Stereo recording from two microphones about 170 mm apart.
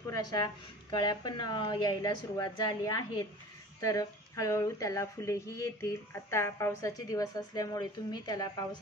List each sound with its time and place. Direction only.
0.1 s a woman's voice: 20° left (ahead or behind)